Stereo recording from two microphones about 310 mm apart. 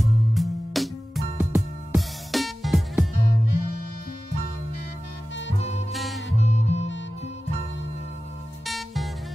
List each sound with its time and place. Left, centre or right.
0.3 s music: centre
5.6 s music: left
5.9 s music: centre
6.4 s music: left
8.6 s music: centre